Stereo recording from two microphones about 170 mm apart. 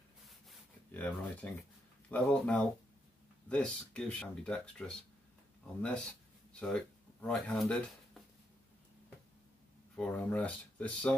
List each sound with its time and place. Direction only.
0.5 s a sound: 10° left (ahead or behind)
2.0 s speech: 10° left (ahead or behind)
9.9 s speech: 10° left (ahead or behind)